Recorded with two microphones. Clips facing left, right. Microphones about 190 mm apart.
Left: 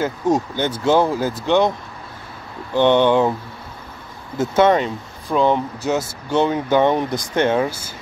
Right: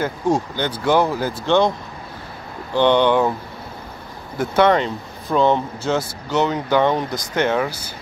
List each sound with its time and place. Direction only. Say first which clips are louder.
0.0 s speech: left 1 dB; 20° left (ahead or behind)
2.7 s speech: left 1 dB; 20° left (ahead or behind)
4.4 s speech: left 1 dB; 20° left (ahead or behind)
5.3 s speech: even; 5° left (ahead or behind)
5.8 s speech: even; 20° left (ahead or behind)